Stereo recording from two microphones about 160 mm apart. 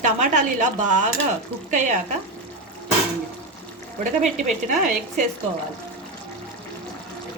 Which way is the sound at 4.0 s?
45° right (ahead or behind).